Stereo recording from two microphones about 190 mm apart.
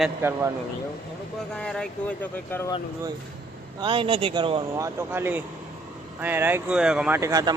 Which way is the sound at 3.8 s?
25° right (ahead or behind).